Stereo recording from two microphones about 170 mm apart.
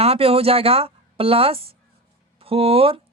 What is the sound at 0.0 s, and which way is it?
Speech, 35° right (ahead or behind).